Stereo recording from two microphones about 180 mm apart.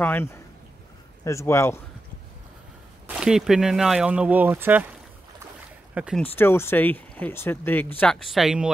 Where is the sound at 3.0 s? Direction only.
5° right (ahead or behind).